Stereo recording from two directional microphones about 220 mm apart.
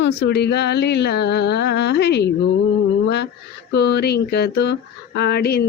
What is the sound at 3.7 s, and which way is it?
Speech, 50° left (ahead or behind).